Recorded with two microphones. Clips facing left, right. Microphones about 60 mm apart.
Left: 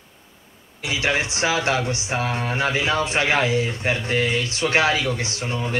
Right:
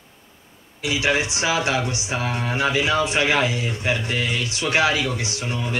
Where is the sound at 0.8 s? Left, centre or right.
Left.